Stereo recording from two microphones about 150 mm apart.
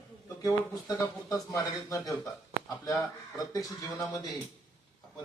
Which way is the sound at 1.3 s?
20° left (ahead or behind).